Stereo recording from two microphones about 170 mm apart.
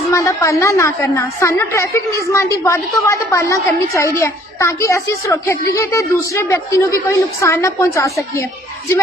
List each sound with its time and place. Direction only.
0.1 s a woman's voice: 20° left (ahead or behind)